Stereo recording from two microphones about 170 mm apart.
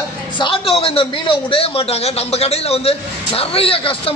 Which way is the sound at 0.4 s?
30° left (ahead or behind).